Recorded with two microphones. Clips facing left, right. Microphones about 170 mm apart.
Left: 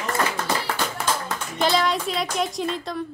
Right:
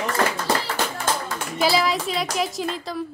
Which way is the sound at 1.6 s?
5° right (ahead or behind).